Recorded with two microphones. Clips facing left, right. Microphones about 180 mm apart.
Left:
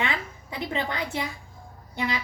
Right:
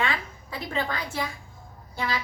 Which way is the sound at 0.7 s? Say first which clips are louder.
Even; 20° left (ahead or behind).